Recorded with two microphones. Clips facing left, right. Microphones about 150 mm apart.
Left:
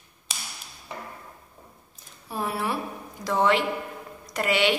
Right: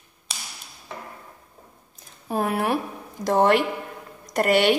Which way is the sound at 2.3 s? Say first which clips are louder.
Right 5 dB; 55° right (ahead or behind).